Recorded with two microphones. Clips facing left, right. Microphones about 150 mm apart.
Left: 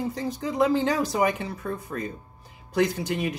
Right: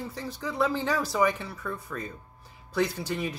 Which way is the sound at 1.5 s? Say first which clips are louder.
Left 4 dB; 45° left (ahead or behind).